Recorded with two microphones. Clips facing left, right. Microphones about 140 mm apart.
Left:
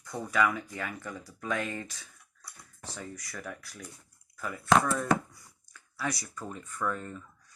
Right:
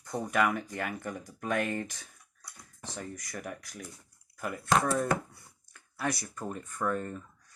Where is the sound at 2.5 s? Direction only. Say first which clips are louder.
Right 1 dB; 20° right (ahead or behind).